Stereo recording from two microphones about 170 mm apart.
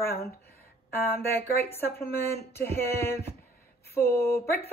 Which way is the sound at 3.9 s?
15° left (ahead or behind).